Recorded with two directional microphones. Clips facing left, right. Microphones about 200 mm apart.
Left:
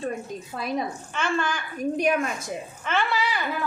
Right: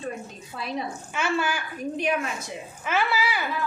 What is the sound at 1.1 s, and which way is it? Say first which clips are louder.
Speech: right 1 dB; 10° right (ahead or behind).